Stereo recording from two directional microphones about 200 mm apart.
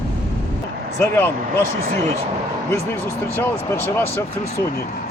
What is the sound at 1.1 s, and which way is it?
Speech, 10° left (ahead or behind).